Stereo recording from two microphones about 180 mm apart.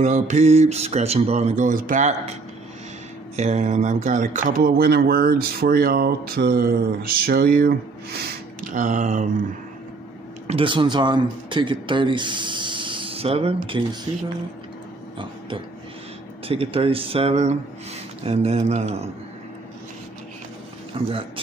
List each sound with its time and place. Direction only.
0.0 s speech: 40° right (ahead or behind)
3.3 s speech: 40° right (ahead or behind)
10.4 s speech: 30° right (ahead or behind)
16.4 s speech: 30° right (ahead or behind)
20.9 s a man's voice: 30° right (ahead or behind)